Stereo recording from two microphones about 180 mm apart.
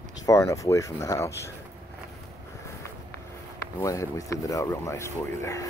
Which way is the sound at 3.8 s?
20° left (ahead or behind).